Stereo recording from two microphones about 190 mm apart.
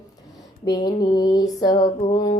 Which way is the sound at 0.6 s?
20° left (ahead or behind).